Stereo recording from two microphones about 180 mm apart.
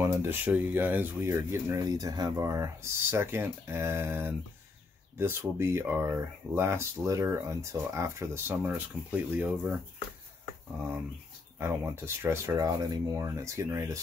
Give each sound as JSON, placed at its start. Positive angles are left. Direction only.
{"t": 0.0, "sound": "speech", "side_deg": -10}
{"t": 11.5, "sound": "speech", "side_deg": -15}